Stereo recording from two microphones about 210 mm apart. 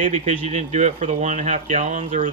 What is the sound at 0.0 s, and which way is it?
Speech, 30° right (ahead or behind).